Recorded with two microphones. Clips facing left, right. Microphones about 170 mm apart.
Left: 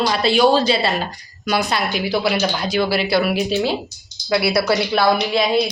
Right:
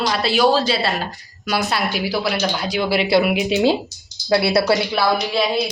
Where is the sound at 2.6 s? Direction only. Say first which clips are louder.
Right 1 dB; 15° right (ahead or behind).